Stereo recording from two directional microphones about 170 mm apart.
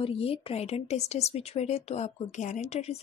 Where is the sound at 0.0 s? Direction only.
35° left (ahead or behind).